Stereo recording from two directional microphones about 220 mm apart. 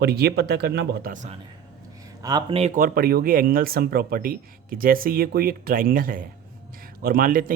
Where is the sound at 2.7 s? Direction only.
40° right (ahead or behind).